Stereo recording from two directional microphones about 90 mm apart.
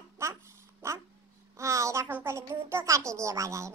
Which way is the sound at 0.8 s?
30° right (ahead or behind).